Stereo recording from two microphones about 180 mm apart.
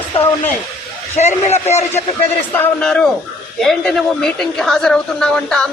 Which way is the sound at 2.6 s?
5° left (ahead or behind).